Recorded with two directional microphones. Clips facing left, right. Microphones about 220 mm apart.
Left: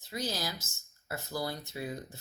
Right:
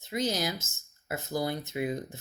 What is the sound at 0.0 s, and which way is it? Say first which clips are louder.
Speech: right 6 dB; 20° right (ahead or behind).